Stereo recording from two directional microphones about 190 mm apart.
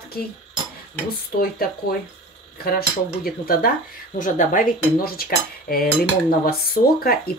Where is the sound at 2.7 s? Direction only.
55° left (ahead or behind).